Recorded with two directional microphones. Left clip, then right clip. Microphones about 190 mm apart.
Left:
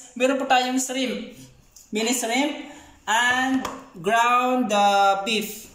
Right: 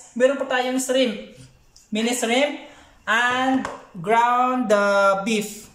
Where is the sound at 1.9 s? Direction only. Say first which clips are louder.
Right 2 dB; 50° right (ahead or behind).